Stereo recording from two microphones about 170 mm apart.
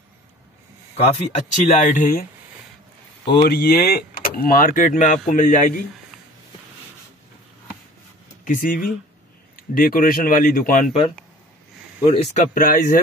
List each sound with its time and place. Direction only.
0.9 s speech: 40° left (ahead or behind)
3.4 s speech: 65° left (ahead or behind)
8.5 s speech: 55° left (ahead or behind)
12.0 s speech: 40° left (ahead or behind)